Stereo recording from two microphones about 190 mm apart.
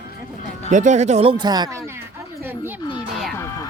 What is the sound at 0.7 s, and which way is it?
Speech, 40° right (ahead or behind).